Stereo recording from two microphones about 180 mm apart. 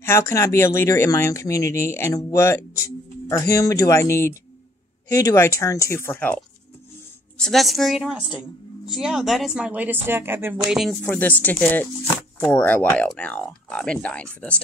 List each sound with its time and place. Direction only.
0.0 s speech: 15° left (ahead or behind); by 11.1 s centre (ahead or behind)
11.1 s speech: 10° left (ahead or behind)